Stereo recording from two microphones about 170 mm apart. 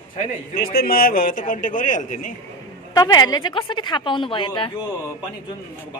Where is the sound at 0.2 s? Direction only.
60° left (ahead or behind).